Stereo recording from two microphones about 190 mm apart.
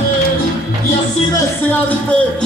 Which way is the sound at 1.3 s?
10° left (ahead or behind).